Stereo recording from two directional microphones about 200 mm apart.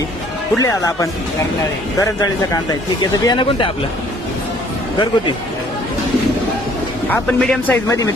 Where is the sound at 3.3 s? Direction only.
25° left (ahead or behind).